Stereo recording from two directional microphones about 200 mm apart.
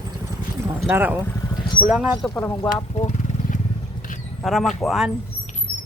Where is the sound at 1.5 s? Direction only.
20° left (ahead or behind).